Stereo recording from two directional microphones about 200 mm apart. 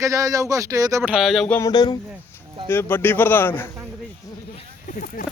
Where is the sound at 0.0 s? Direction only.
15° right (ahead or behind).